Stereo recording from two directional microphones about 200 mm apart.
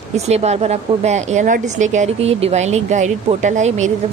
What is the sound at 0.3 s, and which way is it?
Speech, 35° right (ahead or behind).